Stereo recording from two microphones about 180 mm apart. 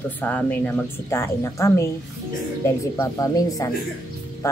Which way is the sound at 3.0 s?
20° left (ahead or behind).